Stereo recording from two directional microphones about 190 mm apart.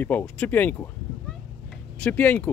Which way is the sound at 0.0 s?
5° left (ahead or behind).